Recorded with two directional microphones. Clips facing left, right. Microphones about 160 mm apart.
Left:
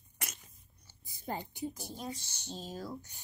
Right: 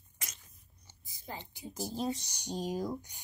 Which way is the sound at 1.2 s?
50° left (ahead or behind).